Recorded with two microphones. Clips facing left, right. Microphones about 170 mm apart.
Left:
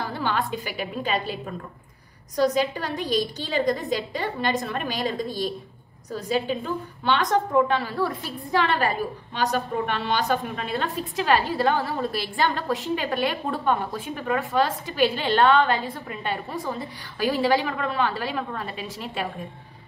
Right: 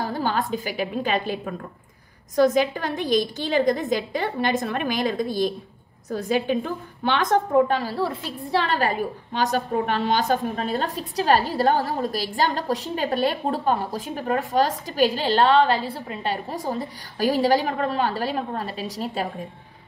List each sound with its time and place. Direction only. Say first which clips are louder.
0.0 s a woman's voice: right 2 dB; 40° right (ahead or behind)